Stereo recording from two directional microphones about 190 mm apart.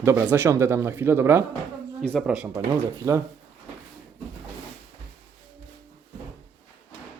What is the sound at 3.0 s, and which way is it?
Speech, 15° right (ahead or behind).